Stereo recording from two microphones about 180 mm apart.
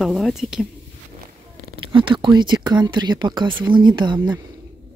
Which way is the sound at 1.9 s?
30° right (ahead or behind).